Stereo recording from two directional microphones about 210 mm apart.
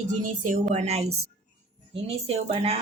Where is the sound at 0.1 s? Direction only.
40° right (ahead or behind).